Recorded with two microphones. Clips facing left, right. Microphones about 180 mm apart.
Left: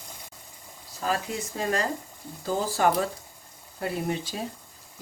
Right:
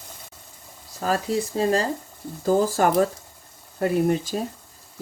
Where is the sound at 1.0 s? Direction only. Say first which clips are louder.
Right 6 dB; 35° right (ahead or behind).